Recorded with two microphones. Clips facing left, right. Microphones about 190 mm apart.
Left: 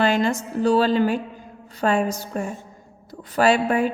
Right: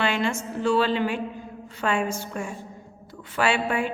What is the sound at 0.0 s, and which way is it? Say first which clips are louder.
A woman's voice: left 5 dB; 40° left (ahead or behind).